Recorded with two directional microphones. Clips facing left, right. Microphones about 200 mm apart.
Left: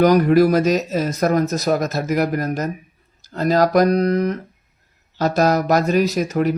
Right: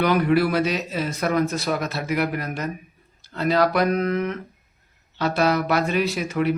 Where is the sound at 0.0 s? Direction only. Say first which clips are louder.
Left 6 dB; 40° left (ahead or behind).